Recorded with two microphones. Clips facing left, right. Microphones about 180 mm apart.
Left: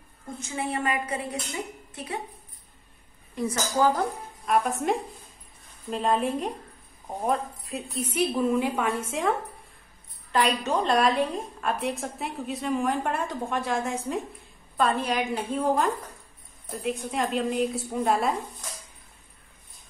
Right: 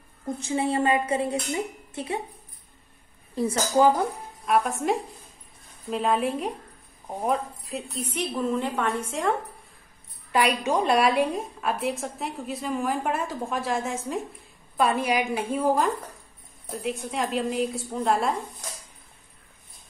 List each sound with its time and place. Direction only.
0.4 s speech: 30° right (ahead or behind)
3.3 s a woman's voice: 30° right (ahead or behind)
4.5 s a woman's voice: centre (ahead or behind)
10.3 s a woman's voice: 10° right (ahead or behind)
14.8 s a woman's voice: 10° right (ahead or behind)